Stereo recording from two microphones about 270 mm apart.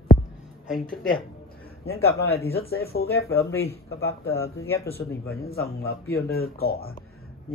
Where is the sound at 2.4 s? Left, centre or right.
Left.